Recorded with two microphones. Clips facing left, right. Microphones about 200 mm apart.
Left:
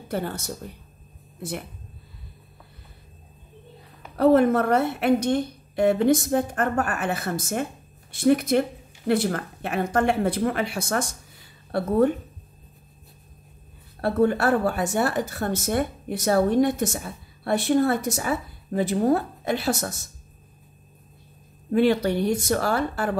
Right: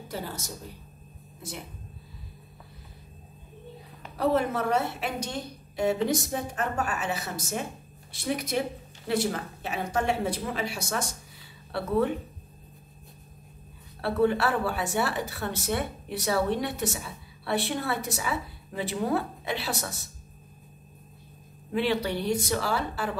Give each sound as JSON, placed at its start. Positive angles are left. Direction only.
{"t": 0.1, "sound": "a woman's voice", "side_deg": 60}
{"t": 4.2, "sound": "a woman's voice", "side_deg": 55}
{"t": 14.0, "sound": "a woman's voice", "side_deg": 45}
{"t": 21.7, "sound": "a woman's voice", "side_deg": 45}